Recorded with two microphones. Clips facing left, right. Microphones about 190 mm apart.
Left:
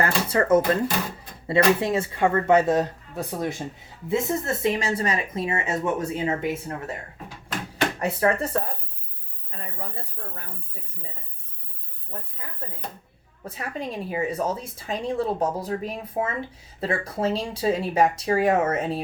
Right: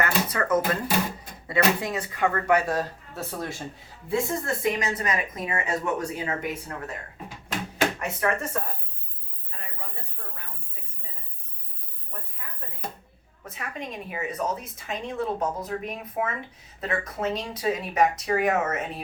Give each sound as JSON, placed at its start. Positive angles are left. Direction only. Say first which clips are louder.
{"t": 0.0, "sound": "speech", "louder": "left 3 dB", "side_deg": 30}
{"t": 7.9, "sound": "a woman's voice", "louder": "left 4 dB", "side_deg": 35}
{"t": 12.4, "sound": "a woman's voice", "louder": "right 2 dB", "side_deg": 30}